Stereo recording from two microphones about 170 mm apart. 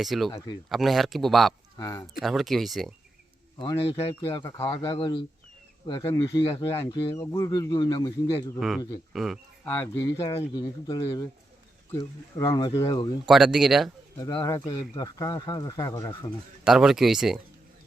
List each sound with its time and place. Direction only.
0.0 s speech: centre (ahead or behind)
0.3 s speech: 25° left (ahead or behind)
0.7 s speech: centre (ahead or behind)
1.8 s speech: 15° left (ahead or behind)
2.1 s speech: centre (ahead or behind)
3.6 s speech: 30° left (ahead or behind)
6.4 s speech: 30° left (ahead or behind)
6.7 s speech: 20° left (ahead or behind)
8.5 s speech: centre (ahead or behind)
9.6 s speech: 10° left (ahead or behind)
12.4 s speech: 20° left (ahead or behind)
13.2 s speech: centre (ahead or behind)
14.2 s speech: 25° left (ahead or behind)
16.6 s speech: 5° right (ahead or behind)